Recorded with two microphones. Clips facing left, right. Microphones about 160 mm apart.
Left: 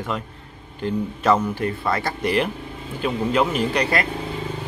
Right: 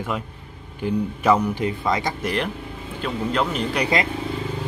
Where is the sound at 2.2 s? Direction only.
Centre (ahead or behind).